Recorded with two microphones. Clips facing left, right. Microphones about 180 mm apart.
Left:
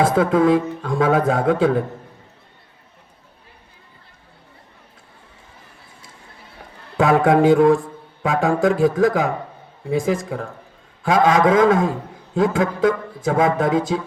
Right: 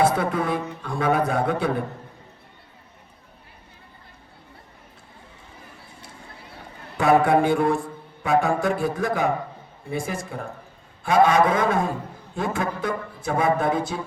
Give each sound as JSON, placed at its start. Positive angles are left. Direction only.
{"t": 0.0, "sound": "speech", "side_deg": 90}
{"t": 7.0, "sound": "speech", "side_deg": 90}